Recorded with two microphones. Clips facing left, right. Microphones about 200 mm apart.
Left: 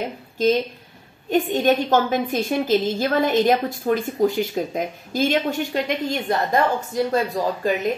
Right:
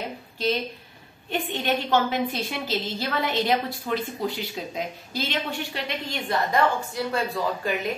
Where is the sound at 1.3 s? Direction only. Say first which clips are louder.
Left 8 dB; 45° left (ahead or behind).